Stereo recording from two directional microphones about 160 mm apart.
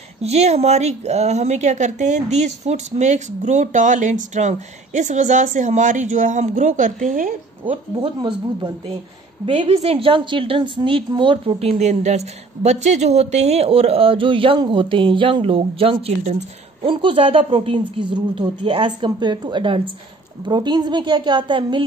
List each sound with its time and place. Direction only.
0.2 s speech: 40° right (ahead or behind)
7.7 s a woman's voice: 30° right (ahead or behind)